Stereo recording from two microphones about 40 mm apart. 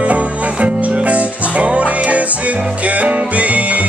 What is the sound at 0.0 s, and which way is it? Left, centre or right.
Music, right.